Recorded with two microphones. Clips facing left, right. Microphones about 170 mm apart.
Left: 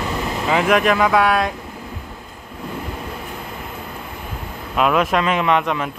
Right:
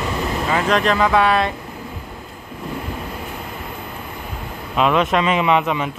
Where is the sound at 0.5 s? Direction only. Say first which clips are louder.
Left 2 dB; 10° left (ahead or behind).